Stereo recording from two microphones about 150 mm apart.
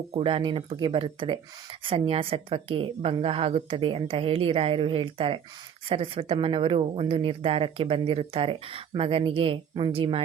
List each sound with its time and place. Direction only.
0.1 s speech: 40° right (ahead or behind)